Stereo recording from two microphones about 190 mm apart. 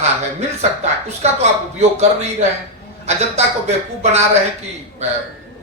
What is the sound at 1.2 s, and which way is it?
A man's voice, 35° right (ahead or behind).